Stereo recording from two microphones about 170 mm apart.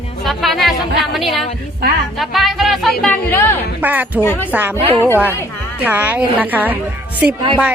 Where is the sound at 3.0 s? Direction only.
10° left (ahead or behind).